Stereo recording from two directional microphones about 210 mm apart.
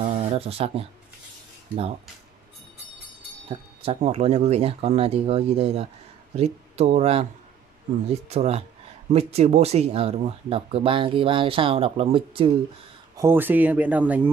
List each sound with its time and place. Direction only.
0.0 s a sound: 35° right (ahead or behind)
3.4 s speech: 25° right (ahead or behind)
13.2 s speech: 10° right (ahead or behind)